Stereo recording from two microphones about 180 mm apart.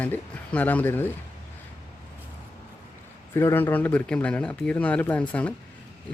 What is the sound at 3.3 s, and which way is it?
A man's voice, 15° left (ahead or behind).